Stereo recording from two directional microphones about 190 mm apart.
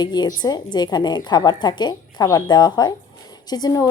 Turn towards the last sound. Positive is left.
turn(degrees=20)  # may be behind; listen again after turning